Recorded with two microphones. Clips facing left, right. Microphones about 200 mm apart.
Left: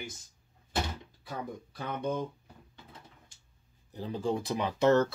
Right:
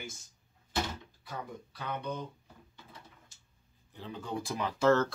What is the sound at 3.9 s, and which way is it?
Speech, 35° left (ahead or behind).